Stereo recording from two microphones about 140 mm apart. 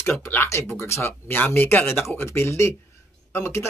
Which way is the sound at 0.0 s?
15° left (ahead or behind).